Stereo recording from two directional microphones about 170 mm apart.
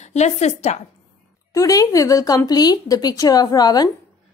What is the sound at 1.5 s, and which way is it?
Speech, 20° left (ahead or behind).